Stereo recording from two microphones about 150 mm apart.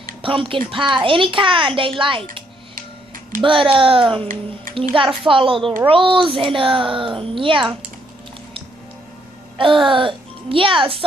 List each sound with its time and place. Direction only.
0.2 s a child's voice: 35° right (ahead or behind)
3.4 s a child's voice: 35° right (ahead or behind)
9.6 s a child's voice: 35° right (ahead or behind)